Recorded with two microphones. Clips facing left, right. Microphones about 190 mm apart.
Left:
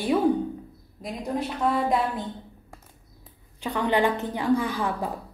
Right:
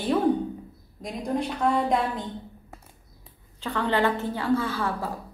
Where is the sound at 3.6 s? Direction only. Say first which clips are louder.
Left 1 dB; 15° left (ahead or behind).